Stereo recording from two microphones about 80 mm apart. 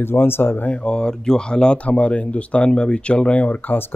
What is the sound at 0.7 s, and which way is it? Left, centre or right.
Speech, centre.